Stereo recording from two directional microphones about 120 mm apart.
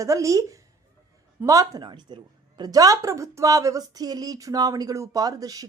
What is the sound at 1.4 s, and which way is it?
A woman's voice, 30° right (ahead or behind).